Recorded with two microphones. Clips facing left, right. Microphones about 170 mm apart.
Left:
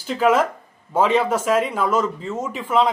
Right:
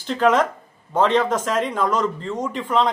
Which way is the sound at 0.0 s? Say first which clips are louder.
Even; 5° left (ahead or behind).